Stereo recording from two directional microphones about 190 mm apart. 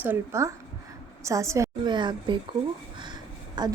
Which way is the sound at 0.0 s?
10° right (ahead or behind).